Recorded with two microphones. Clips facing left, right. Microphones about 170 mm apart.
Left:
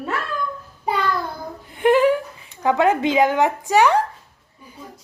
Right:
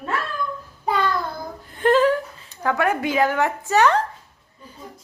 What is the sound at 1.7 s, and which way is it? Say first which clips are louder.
Laughter: left 2 dB; 15° left (ahead or behind).